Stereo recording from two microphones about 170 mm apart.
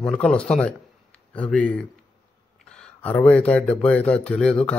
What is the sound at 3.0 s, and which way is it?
Speech, 10° left (ahead or behind).